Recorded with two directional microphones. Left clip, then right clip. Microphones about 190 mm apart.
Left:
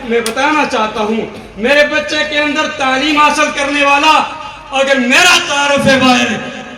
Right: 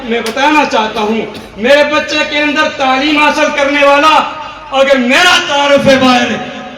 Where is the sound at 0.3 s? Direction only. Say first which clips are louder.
Right 5 dB; 15° left (ahead or behind).